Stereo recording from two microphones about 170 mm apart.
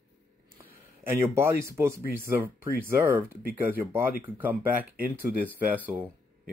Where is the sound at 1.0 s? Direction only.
15° right (ahead or behind).